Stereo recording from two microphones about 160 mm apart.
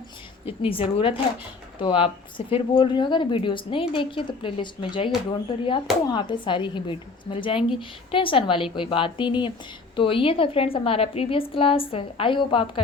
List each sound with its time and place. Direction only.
0.4 s speech: 35° left (ahead or behind)